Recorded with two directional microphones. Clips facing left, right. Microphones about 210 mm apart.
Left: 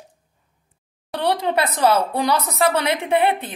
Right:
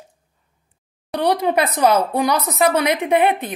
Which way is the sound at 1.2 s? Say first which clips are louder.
Right 3 dB; 15° right (ahead or behind).